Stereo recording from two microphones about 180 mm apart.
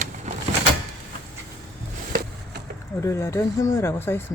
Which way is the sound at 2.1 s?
50° right (ahead or behind).